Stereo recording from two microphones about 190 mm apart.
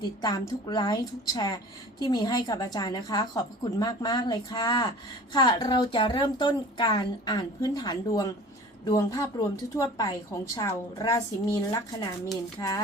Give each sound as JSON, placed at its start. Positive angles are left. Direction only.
{"t": 0.0, "sound": "a woman's voice", "side_deg": 20}